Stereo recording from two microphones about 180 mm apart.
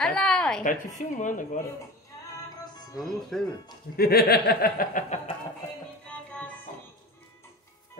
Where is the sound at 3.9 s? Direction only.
60° left (ahead or behind); by 5.3 s 40° left (ahead or behind).